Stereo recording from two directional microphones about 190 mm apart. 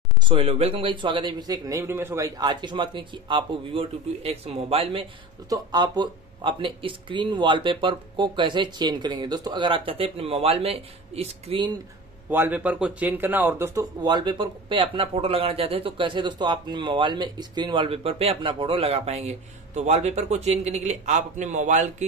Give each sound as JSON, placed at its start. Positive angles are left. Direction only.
{"t": 0.3, "sound": "speech", "side_deg": -30}
{"t": 12.3, "sound": "speech", "side_deg": -10}
{"t": 14.0, "sound": "speech", "side_deg": -25}